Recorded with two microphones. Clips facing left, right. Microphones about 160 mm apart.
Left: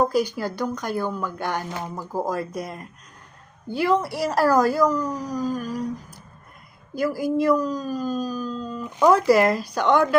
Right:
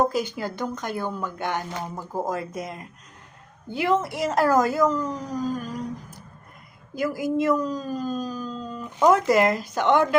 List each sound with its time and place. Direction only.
0.0 s speech: 25° right (ahead or behind)
6.9 s speech: 20° right (ahead or behind)